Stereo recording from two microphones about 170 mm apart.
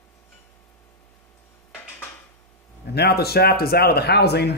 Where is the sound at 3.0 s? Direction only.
70° left (ahead or behind).